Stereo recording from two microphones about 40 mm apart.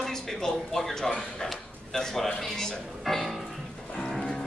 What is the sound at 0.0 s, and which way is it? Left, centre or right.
A man's voice, centre.